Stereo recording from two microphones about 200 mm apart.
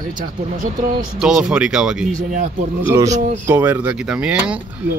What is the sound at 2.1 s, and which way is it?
Speech, 40° right (ahead or behind).